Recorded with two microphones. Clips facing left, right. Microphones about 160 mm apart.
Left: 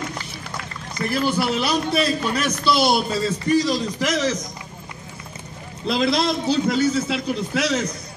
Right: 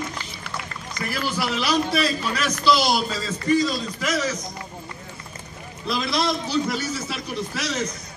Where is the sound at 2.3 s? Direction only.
55° left (ahead or behind).